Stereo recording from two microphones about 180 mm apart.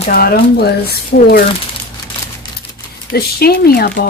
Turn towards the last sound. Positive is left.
turn(degrees=60)  # may be behind; listen again after turning